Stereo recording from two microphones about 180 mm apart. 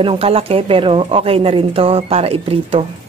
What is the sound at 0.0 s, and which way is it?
Speech, 30° right (ahead or behind).